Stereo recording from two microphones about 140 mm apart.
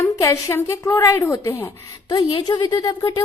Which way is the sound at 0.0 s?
20° left (ahead or behind).